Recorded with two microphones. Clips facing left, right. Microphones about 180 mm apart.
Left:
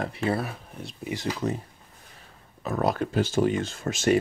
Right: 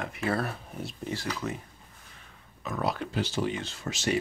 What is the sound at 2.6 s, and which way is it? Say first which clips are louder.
Speech: left 5 dB; 40° left (ahead or behind).